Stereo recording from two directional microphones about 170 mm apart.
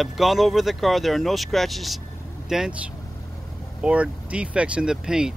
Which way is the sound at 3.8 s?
5° right (ahead or behind).